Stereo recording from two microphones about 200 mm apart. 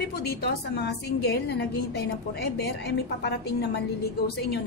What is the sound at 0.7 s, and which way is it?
A woman's voice, 55° left (ahead or behind).